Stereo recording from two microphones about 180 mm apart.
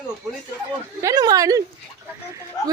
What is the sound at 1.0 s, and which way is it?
Speech, 20° right (ahead or behind).